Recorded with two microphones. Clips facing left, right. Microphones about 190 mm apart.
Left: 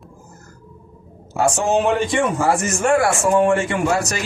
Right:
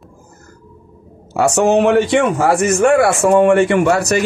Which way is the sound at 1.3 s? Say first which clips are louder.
Right 5 dB; 70° right (ahead or behind).